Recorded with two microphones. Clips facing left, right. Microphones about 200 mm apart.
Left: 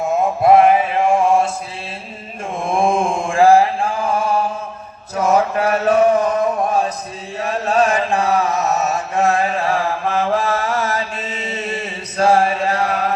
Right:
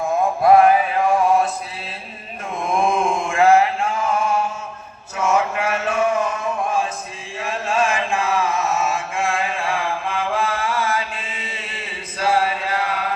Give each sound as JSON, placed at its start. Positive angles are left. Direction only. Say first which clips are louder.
{"t": 0.0, "sound": "mantra", "louder": "left 2 dB", "side_deg": 25}
{"t": 2.6, "sound": "chant", "louder": "left 2 dB", "side_deg": 30}
{"t": 5.1, "sound": "a sound", "louder": "left 4 dB", "side_deg": 35}
{"t": 7.3, "sound": "mantra", "louder": "left 5 dB", "side_deg": 40}